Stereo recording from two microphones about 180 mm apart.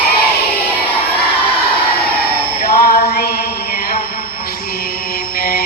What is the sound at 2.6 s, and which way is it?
Music, 60° left (ahead or behind).